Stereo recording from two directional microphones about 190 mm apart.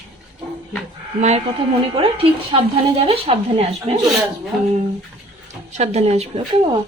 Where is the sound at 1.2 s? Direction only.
35° right (ahead or behind).